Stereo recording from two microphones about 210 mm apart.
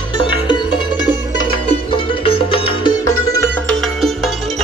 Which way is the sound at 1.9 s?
25° left (ahead or behind).